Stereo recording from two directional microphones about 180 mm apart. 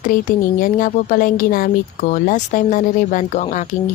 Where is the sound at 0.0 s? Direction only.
45° left (ahead or behind).